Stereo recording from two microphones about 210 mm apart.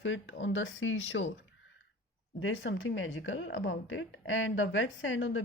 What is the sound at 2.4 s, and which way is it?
A woman's voice, 65° left (ahead or behind).